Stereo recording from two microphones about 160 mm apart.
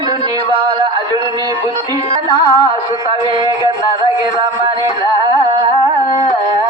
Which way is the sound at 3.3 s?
25° right (ahead or behind).